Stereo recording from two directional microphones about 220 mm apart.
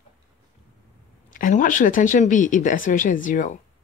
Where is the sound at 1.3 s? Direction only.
35° left (ahead or behind).